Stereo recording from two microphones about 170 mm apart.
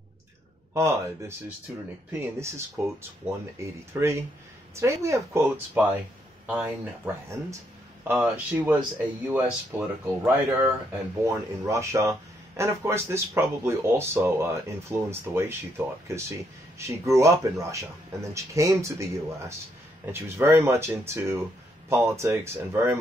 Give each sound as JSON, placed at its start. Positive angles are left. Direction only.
{"t": 0.7, "sound": "speech", "side_deg": -15}